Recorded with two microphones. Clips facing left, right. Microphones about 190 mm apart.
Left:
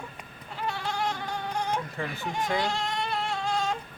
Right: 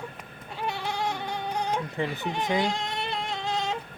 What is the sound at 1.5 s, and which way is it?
Baby cry, 20° right (ahead or behind).